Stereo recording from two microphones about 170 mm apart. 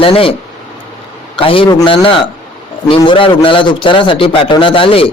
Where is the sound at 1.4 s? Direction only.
30° left (ahead or behind).